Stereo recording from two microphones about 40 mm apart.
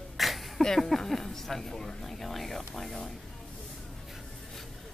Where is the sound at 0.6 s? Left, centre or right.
Centre.